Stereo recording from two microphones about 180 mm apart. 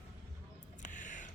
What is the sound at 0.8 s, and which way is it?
Music, 45° left (ahead or behind).